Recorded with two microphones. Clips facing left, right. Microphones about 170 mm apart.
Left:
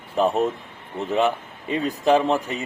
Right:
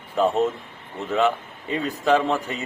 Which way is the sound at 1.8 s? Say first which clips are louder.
Left 2 dB; 15° left (ahead or behind).